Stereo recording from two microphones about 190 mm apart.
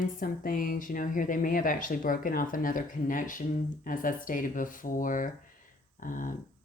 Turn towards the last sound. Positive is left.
turn(degrees=45)  # may be behind; listen again after turning